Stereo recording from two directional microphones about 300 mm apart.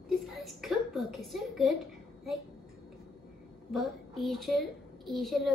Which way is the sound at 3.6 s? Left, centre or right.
Centre.